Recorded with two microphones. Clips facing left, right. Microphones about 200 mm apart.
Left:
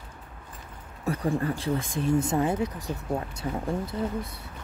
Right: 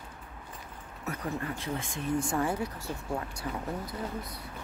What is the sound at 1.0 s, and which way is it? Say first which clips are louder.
Speech: left 8 dB; 30° left (ahead or behind).